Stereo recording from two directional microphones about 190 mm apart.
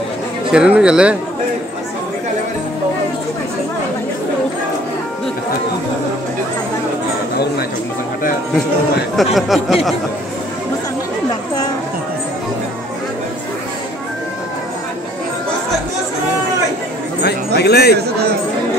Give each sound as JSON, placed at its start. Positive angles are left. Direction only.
{"t": 0.5, "sound": "speech", "side_deg": -5}
{"t": 9.1, "sound": "speech", "side_deg": 0}
{"t": 17.6, "sound": "speech", "side_deg": 60}